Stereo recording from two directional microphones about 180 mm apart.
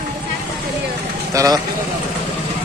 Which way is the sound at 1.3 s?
20° right (ahead or behind).